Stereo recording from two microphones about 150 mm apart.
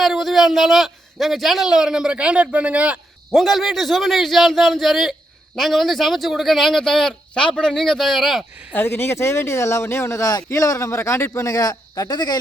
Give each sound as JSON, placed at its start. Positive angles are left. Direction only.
{"t": 0.0, "sound": "a man's voice", "side_deg": 0}
{"t": 8.7, "sound": "speech", "side_deg": 15}